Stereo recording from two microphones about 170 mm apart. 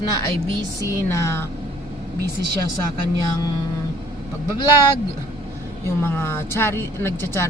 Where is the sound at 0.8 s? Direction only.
15° left (ahead or behind).